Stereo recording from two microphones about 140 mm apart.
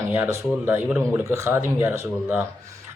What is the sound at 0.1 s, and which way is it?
Speech, 15° right (ahead or behind).